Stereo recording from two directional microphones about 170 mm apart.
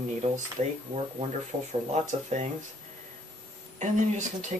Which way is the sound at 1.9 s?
40° right (ahead or behind).